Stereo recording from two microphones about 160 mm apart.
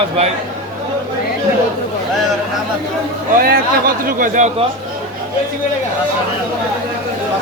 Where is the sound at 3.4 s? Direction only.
65° right (ahead or behind).